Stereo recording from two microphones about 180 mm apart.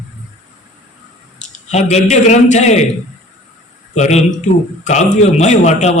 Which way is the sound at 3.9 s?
40° left (ahead or behind).